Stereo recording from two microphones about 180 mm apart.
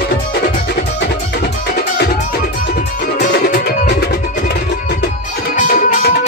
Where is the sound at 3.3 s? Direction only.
65° left (ahead or behind).